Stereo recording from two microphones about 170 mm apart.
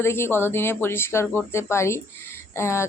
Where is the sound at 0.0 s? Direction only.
15° left (ahead or behind).